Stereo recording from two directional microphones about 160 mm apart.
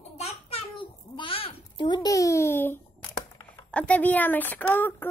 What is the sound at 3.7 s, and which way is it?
Speech, 10° left (ahead or behind).